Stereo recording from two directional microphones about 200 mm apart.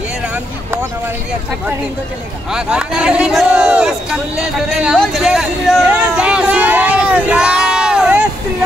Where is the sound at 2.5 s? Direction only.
5° right (ahead or behind).